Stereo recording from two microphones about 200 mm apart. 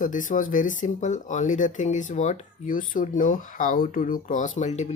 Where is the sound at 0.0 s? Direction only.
40° left (ahead or behind).